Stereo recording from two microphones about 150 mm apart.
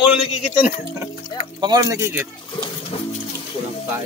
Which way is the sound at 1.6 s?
25° right (ahead or behind).